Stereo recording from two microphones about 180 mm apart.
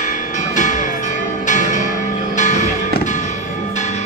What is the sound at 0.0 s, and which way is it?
Change ringing, 45° left (ahead or behind).